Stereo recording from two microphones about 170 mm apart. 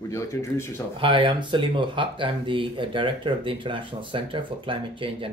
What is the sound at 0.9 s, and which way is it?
Speech, 30° right (ahead or behind).